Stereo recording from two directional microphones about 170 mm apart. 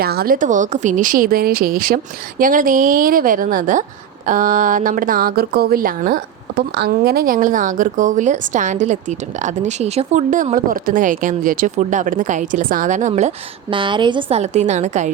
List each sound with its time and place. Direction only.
0.0 s speech: 65° right (ahead or behind); by 13.3 s 45° right (ahead or behind)
13.7 s a woman's voice: 30° right (ahead or behind)